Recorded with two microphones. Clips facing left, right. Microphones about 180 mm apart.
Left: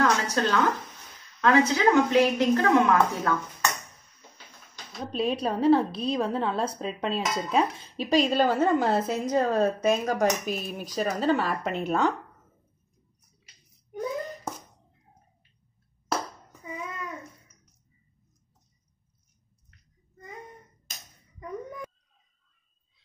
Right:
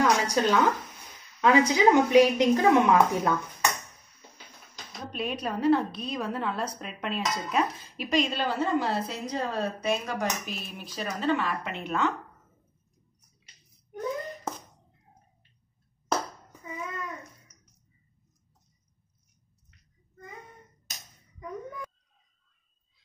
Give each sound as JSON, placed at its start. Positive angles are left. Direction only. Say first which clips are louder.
{"t": 0.0, "sound": "speech", "louder": "right 1 dB", "side_deg": -15}
{"t": 5.1, "sound": "a woman's voice", "louder": "left 5 dB", "side_deg": 30}